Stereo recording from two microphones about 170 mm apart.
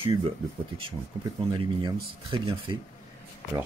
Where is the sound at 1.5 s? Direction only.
30° right (ahead or behind).